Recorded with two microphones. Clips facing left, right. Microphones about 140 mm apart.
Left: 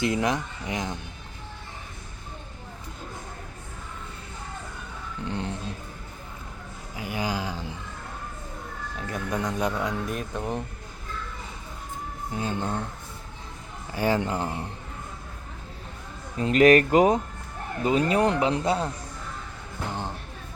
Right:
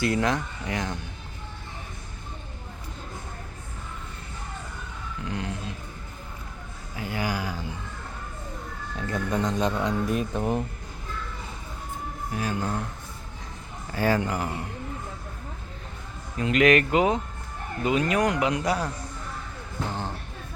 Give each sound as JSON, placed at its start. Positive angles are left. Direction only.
{"t": 0.0, "sound": "speech", "side_deg": 20}
{"t": 5.2, "sound": "music", "side_deg": 30}
{"t": 6.9, "sound": "a sound", "side_deg": 15}
{"t": 9.0, "sound": "speech", "side_deg": 10}
{"t": 10.1, "sound": "speech", "side_deg": -5}
{"t": 12.3, "sound": "speech", "side_deg": 25}
{"t": 13.9, "sound": "speech", "side_deg": 20}
{"t": 16.4, "sound": "speech", "side_deg": 35}
{"t": 19.9, "sound": "music", "side_deg": 15}